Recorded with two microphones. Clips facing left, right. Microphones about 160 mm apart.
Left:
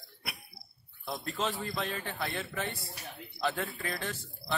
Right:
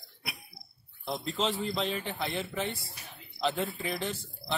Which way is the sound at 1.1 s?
20° right (ahead or behind).